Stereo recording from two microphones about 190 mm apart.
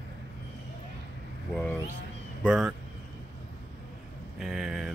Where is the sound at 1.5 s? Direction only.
10° left (ahead or behind).